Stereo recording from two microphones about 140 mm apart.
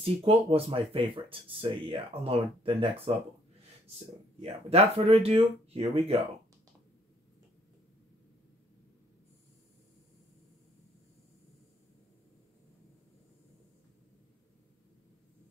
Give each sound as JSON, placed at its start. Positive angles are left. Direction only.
{"t": 0.0, "sound": "speech", "side_deg": -45}
{"t": 4.4, "sound": "speech", "side_deg": -45}